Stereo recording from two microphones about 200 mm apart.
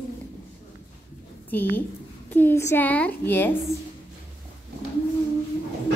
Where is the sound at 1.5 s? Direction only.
10° left (ahead or behind).